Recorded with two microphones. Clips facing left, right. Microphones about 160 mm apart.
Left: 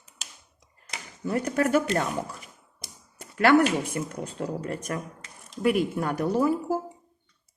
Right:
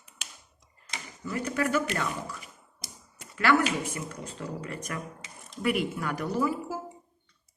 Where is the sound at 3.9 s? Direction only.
55° left (ahead or behind).